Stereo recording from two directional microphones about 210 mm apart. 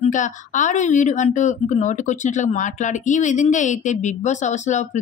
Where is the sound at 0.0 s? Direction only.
35° left (ahead or behind).